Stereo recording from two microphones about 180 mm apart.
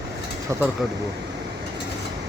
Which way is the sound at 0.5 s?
15° right (ahead or behind).